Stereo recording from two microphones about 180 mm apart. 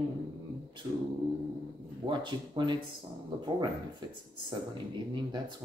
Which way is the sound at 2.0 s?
25° right (ahead or behind).